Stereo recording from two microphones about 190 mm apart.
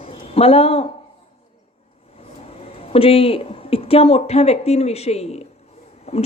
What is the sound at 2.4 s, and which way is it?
A woman's voice, 30° left (ahead or behind).